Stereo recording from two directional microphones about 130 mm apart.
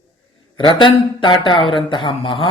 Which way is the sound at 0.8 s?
35° left (ahead or behind).